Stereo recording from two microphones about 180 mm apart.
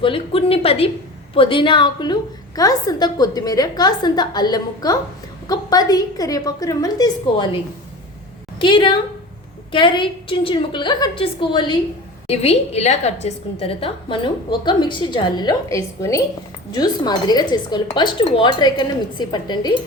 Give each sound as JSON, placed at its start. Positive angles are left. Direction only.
{"t": 0.0, "sound": "a woman's voice", "side_deg": 30}
{"t": 12.3, "sound": "a woman's voice", "side_deg": 35}